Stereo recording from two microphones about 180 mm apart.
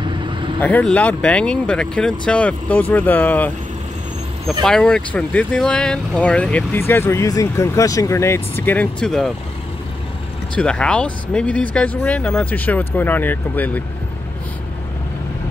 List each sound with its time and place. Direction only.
0.0 s vehicle: 25° right (ahead or behind)
0.6 s speech: 10° left (ahead or behind)
4.6 s speech: 5° left (ahead or behind)
10.5 s speech: 5° left (ahead or behind)